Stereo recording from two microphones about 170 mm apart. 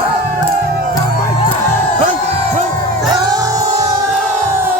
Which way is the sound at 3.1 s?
25° right (ahead or behind).